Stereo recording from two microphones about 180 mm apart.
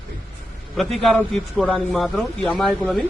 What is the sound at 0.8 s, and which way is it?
A man's voice, centre (ahead or behind).